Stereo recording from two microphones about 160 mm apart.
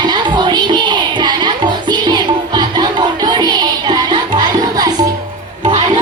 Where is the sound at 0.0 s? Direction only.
25° right (ahead or behind).